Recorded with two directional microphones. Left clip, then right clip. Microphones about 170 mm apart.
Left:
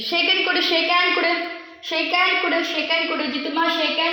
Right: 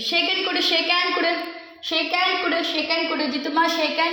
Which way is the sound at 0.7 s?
25° left (ahead or behind).